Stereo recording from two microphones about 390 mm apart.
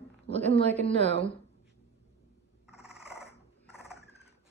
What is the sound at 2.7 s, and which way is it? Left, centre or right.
Cat, centre.